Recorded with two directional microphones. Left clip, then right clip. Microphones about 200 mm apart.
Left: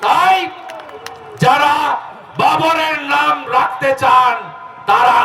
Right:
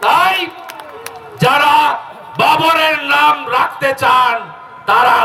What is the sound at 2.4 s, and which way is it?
Music, 25° left (ahead or behind).